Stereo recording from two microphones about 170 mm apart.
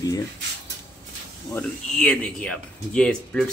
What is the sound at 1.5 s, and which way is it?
Speech, 10° left (ahead or behind).